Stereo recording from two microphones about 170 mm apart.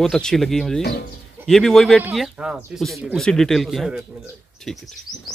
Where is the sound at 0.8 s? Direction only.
70° left (ahead or behind).